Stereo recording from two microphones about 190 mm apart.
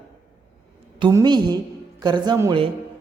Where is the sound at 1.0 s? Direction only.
20° right (ahead or behind).